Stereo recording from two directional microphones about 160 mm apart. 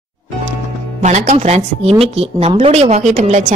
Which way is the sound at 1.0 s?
45° right (ahead or behind).